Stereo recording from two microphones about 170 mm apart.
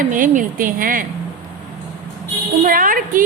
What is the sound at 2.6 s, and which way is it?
Speech, 55° right (ahead or behind).